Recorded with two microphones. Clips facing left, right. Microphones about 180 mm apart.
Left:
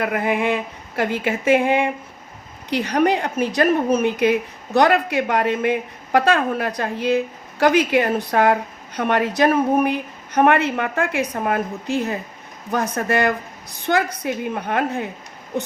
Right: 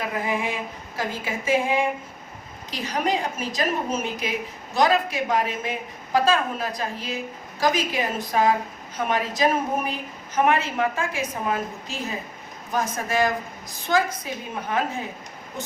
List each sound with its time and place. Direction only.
0.0 s a woman's voice: 60° left (ahead or behind)